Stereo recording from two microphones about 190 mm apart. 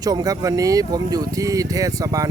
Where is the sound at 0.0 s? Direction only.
20° right (ahead or behind).